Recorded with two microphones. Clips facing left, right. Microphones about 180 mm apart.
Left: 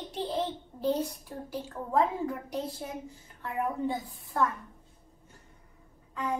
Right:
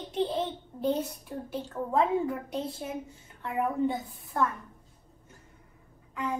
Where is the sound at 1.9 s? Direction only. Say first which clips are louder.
Right 1 dB; 25° right (ahead or behind).